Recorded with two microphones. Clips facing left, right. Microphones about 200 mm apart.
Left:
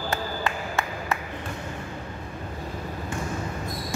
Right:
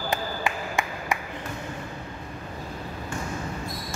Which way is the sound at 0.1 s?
15° right (ahead or behind).